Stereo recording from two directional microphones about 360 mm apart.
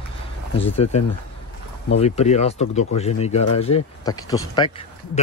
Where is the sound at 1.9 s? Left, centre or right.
Centre.